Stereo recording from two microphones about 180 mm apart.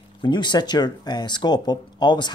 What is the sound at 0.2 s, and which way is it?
Speech, 25° left (ahead or behind).